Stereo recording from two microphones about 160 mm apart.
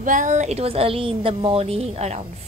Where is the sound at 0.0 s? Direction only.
50° right (ahead or behind).